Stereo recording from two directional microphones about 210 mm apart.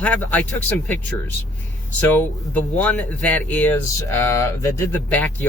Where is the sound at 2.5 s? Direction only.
5° left (ahead or behind).